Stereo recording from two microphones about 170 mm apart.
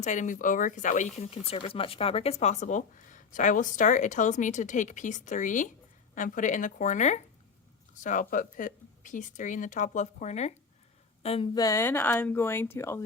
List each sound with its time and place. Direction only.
0.0 s a woman's voice: 45° left (ahead or behind)
11.5 s speech: 20° left (ahead or behind)